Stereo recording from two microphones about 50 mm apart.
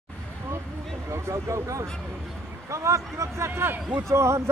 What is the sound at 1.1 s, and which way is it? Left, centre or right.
A man's voice, right.